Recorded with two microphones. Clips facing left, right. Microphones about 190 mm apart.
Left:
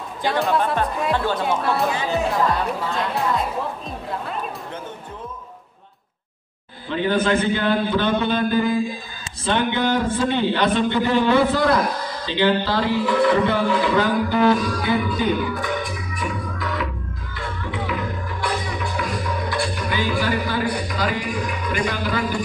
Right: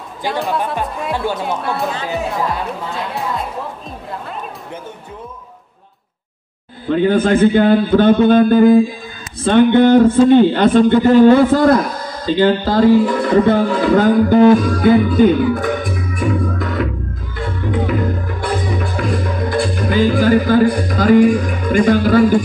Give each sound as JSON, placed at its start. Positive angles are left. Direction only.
{"t": 0.2, "sound": "speech", "side_deg": 0}
{"t": 6.9, "sound": "speech", "side_deg": -50}
{"t": 17.6, "sound": "music", "side_deg": -50}